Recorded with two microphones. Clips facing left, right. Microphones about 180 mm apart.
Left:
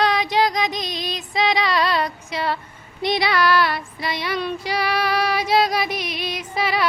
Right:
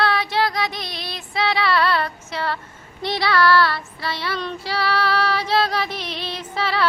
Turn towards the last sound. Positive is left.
turn(degrees=10)  # may be behind; listen again after turning